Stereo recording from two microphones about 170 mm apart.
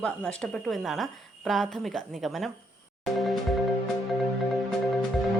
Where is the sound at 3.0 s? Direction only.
Centre (ahead or behind).